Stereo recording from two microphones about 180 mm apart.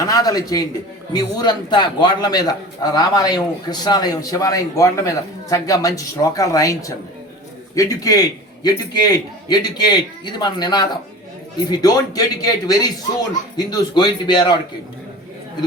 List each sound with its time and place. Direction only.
0.0 s a man's voice: 20° left (ahead or behind)